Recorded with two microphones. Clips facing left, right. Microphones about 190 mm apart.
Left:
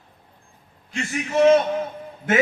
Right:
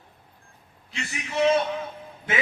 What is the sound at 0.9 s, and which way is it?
Speech, 45° left (ahead or behind).